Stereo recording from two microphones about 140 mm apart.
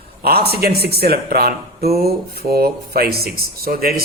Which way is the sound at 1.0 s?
90° right.